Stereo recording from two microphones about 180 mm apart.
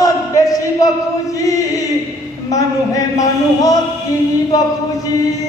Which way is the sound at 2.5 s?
20° left (ahead or behind).